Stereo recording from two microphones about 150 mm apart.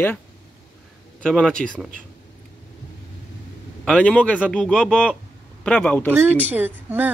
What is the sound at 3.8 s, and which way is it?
Speech, 5° left (ahead or behind).